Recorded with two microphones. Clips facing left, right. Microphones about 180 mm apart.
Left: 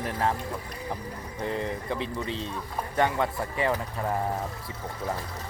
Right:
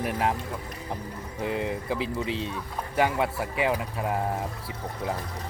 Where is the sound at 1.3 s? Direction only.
10° right (ahead or behind).